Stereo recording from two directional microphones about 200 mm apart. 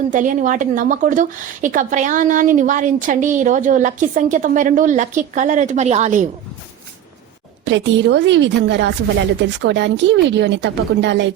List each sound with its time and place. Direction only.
0.1 s a woman's voice: 40° right (ahead or behind)
7.6 s speech: 65° right (ahead or behind)